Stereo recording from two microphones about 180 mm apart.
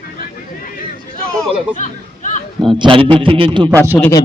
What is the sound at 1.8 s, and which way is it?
Chatter, 40° left (ahead or behind).